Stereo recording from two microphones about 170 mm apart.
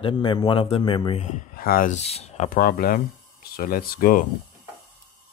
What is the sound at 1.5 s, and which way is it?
Speech, 60° left (ahead or behind).